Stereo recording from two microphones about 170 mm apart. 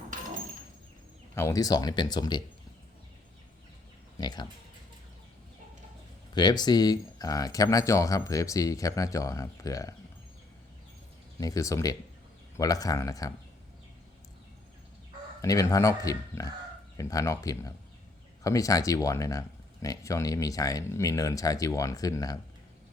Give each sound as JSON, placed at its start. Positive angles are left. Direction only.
{"t": 1.4, "sound": "speech", "side_deg": 20}
{"t": 4.2, "sound": "a sound", "side_deg": 25}
{"t": 6.3, "sound": "speech", "side_deg": 25}
{"t": 11.3, "sound": "speech", "side_deg": 20}
{"t": 15.4, "sound": "speech", "side_deg": 20}